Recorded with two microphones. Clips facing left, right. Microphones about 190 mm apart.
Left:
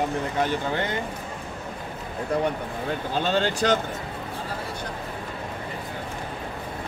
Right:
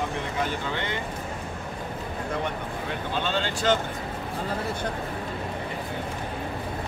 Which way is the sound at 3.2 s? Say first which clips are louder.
Left 5 dB; 40° left (ahead or behind).